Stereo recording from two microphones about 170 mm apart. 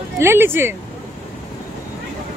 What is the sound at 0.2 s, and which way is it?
Speech, 15° right (ahead or behind).